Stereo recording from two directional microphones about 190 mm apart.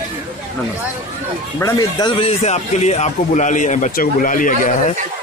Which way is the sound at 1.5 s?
15° left (ahead or behind).